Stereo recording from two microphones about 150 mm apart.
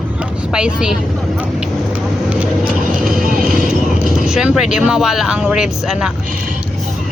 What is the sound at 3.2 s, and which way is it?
Music, 65° right (ahead or behind).